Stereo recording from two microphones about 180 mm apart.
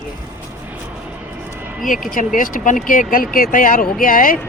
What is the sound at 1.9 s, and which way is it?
Speech, 50° left (ahead or behind).